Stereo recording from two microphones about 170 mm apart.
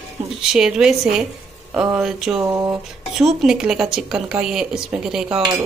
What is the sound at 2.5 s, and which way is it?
Speech, 15° right (ahead or behind).